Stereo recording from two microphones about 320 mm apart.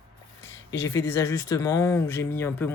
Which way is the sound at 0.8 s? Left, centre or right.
Centre.